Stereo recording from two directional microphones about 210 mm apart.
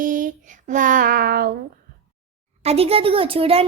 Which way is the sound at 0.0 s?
40° right (ahead or behind).